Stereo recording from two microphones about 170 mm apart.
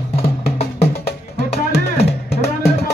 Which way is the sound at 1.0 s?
75° left (ahead or behind).